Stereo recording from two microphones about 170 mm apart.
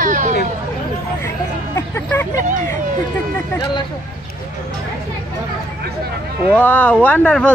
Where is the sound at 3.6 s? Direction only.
25° left (ahead or behind).